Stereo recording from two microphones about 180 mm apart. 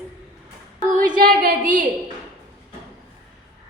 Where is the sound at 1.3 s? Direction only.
50° right (ahead or behind).